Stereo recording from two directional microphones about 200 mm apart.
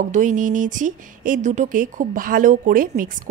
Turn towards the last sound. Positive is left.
turn(degrees=-40)  # may be behind; listen again after turning